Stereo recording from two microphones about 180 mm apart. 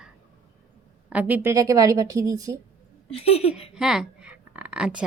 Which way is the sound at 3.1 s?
35° left (ahead or behind).